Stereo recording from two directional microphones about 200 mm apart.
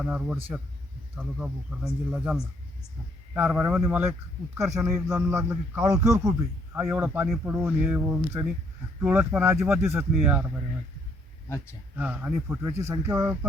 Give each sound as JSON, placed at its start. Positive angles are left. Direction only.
{"t": 0.0, "sound": "a man's voice", "side_deg": -5}
{"t": 11.9, "sound": "a man's voice", "side_deg": -10}
{"t": 12.6, "sound": "speech", "side_deg": -20}